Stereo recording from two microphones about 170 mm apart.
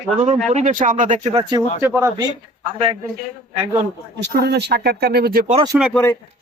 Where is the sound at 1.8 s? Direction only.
15° right (ahead or behind).